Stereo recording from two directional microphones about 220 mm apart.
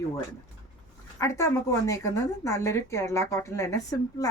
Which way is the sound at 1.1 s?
15° left (ahead or behind).